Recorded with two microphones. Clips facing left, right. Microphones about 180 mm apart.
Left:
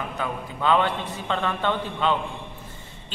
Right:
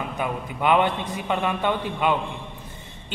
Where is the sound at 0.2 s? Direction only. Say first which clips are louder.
Right 2 dB; 15° right (ahead or behind).